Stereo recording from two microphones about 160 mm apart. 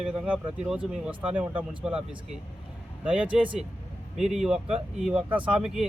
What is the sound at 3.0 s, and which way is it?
Speech, 5° right (ahead or behind).